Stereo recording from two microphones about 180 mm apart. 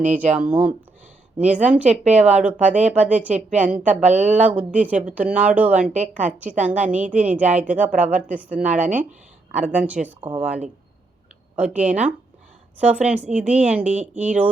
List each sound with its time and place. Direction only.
0.0 s speech: 10° right (ahead or behind)
4.0 s speech: 40° right (ahead or behind)
4.4 s speech: 10° right (ahead or behind)
5.9 s a woman's voice: 45° right (ahead or behind)
6.2 s speech: 10° right (ahead or behind)
10.2 s speech: 25° right (ahead or behind)
11.5 s speech: 10° right (ahead or behind)